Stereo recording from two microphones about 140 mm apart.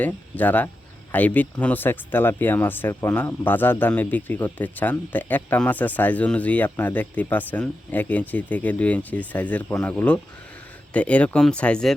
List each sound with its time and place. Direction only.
0.0 s a man's voice: 10° left (ahead or behind)